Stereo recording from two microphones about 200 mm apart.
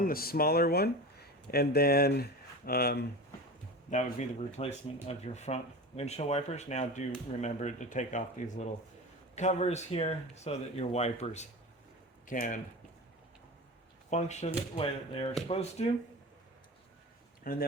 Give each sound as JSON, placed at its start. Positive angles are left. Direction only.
{"t": 0.0, "sound": "speech", "side_deg": 50}
{"t": 3.8, "sound": "speech", "side_deg": 35}
{"t": 14.1, "sound": "speech", "side_deg": 35}
{"t": 17.4, "sound": "speech", "side_deg": 45}